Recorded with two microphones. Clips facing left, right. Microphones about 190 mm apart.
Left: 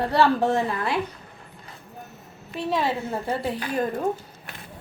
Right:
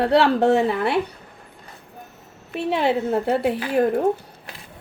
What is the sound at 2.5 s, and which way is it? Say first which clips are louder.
Speech: right 4 dB; 65° right (ahead or behind).